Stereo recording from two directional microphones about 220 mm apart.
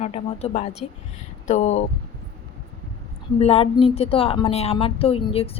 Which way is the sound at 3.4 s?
25° left (ahead or behind).